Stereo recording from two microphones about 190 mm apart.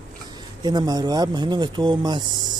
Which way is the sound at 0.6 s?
20° right (ahead or behind).